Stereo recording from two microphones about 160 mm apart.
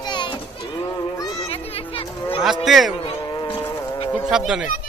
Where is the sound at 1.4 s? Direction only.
40° left (ahead or behind).